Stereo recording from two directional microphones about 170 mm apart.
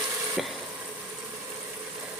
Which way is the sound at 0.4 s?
Centre (ahead or behind).